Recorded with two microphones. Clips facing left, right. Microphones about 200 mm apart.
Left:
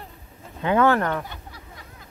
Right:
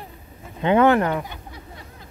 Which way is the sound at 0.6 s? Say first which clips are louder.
Right 3 dB; 20° right (ahead or behind).